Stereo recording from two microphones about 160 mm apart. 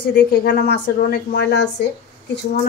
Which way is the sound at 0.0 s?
90° left.